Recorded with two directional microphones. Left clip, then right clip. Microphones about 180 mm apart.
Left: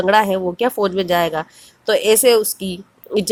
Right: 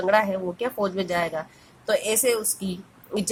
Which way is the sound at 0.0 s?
40° left (ahead or behind).